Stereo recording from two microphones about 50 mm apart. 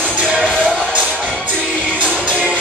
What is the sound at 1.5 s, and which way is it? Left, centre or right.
Music, centre.